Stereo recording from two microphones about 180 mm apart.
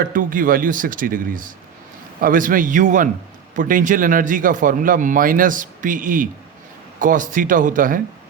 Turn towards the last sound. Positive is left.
turn(degrees=-45)  # may be behind; listen again after turning